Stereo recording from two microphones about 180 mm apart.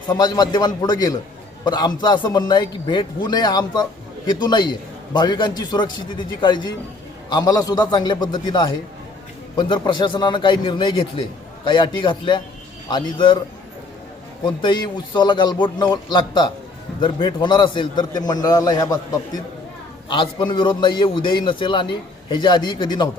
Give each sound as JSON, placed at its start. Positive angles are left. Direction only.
{"t": 0.1, "sound": "a man's voice", "side_deg": 25}
{"t": 14.4, "sound": "a man's voice", "side_deg": 25}